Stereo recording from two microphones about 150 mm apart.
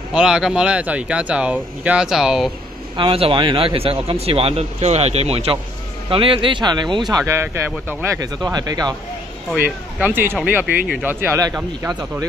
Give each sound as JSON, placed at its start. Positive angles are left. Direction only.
{"t": 0.1, "sound": "speech", "side_deg": -5}
{"t": 3.0, "sound": "speech", "side_deg": -35}
{"t": 7.2, "sound": "speech", "side_deg": -15}
{"t": 9.9, "sound": "speech", "side_deg": -10}